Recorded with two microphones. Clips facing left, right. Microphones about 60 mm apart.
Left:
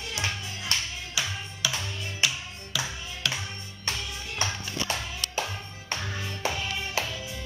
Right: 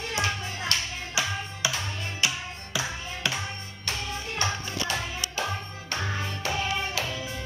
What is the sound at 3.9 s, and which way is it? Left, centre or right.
Music, right.